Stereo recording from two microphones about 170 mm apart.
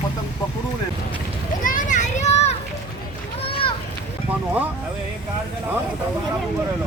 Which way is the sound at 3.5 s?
30° left (ahead or behind).